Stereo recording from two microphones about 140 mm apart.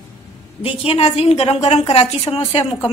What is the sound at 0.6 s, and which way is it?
A woman's voice, 40° left (ahead or behind).